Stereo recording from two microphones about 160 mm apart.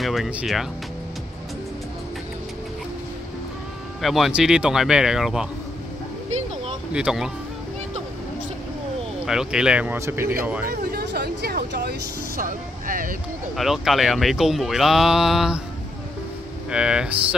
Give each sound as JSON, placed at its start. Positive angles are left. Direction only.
{"t": 0.0, "sound": "speech", "side_deg": 0}
{"t": 4.0, "sound": "speech", "side_deg": 0}
{"t": 6.9, "sound": "speech", "side_deg": -5}
{"t": 9.2, "sound": "speech", "side_deg": -5}
{"t": 10.7, "sound": "speech", "side_deg": -75}
{"t": 13.6, "sound": "speech", "side_deg": 0}
{"t": 16.7, "sound": "speech", "side_deg": -5}